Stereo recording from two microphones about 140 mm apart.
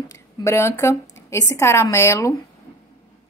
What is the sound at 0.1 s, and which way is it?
A woman's voice, 20° left (ahead or behind).